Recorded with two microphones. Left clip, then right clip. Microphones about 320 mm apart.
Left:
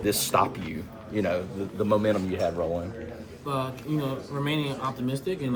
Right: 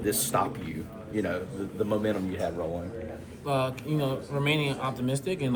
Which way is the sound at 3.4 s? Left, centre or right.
Centre.